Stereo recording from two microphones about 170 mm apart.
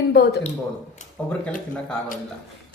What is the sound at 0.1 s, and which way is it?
Speech, 70° left (ahead or behind).